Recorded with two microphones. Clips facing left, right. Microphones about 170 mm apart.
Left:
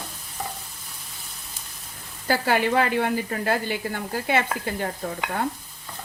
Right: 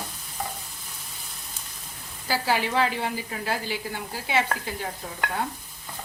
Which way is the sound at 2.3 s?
55° left (ahead or behind).